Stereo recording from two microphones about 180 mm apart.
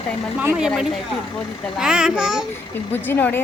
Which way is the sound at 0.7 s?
Centre (ahead or behind).